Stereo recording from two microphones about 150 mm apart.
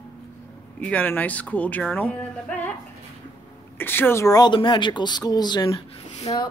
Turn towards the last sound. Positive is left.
turn(degrees=35)  # may be behind; listen again after turning